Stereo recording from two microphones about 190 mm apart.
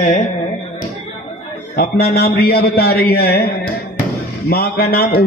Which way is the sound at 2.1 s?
55° left (ahead or behind).